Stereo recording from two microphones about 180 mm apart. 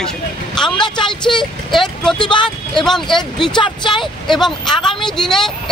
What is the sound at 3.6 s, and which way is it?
Speech, 25° left (ahead or behind).